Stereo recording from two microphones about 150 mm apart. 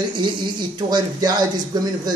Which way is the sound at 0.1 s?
30° right (ahead or behind).